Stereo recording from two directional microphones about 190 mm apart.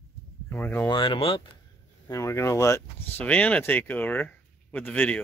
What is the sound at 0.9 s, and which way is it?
Speech, 25° left (ahead or behind).